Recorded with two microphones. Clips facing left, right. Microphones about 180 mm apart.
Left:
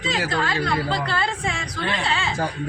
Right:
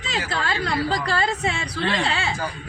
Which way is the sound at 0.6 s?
40° right (ahead or behind).